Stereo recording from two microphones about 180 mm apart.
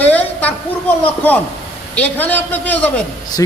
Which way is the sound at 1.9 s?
10° left (ahead or behind).